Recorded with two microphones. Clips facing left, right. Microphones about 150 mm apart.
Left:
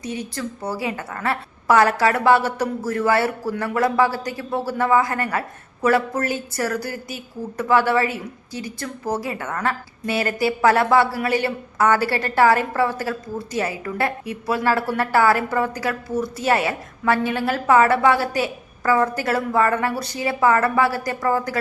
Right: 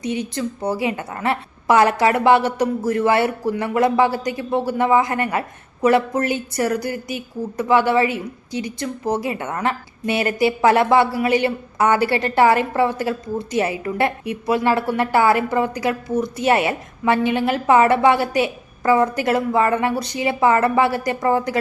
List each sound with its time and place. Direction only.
0.3 s a woman's voice: 20° right (ahead or behind)